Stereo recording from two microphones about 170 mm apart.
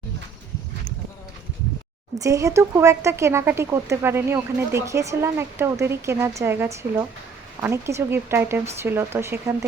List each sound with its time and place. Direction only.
2.1 s speech: 20° right (ahead or behind)